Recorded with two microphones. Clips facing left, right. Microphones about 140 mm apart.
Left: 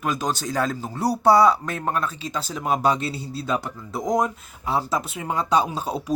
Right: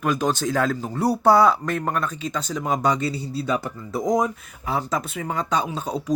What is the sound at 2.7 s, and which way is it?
Speech, 25° left (ahead or behind).